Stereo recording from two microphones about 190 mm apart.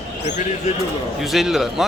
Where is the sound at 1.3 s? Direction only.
Centre (ahead or behind).